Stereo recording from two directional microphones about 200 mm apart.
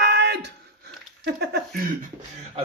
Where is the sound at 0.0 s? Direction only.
55° right (ahead or behind).